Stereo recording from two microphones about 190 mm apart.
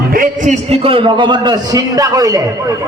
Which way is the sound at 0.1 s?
45° right (ahead or behind).